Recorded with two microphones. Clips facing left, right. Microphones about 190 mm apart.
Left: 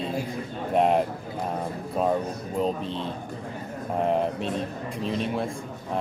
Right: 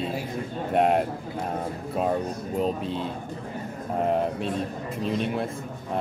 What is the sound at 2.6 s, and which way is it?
Speech, 5° right (ahead or behind).